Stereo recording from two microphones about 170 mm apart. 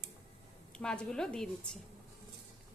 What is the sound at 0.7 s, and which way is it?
Speech, 5° left (ahead or behind).